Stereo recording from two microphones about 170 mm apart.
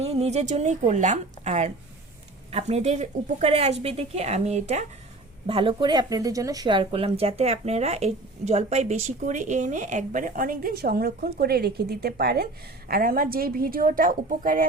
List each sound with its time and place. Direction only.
0.0 s a woman's voice: 35° right (ahead or behind)
5.5 s a woman's voice: 30° right (ahead or behind); by 14.7 s 55° right (ahead or behind)